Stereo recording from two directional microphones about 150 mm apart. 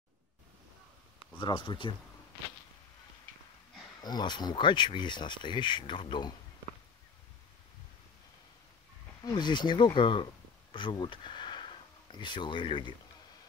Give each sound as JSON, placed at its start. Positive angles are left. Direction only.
{"t": 1.4, "sound": "speech", "side_deg": 30}
{"t": 3.3, "sound": "a sound", "side_deg": -70}
{"t": 4.0, "sound": "speech", "side_deg": 30}
{"t": 9.2, "sound": "speech", "side_deg": 30}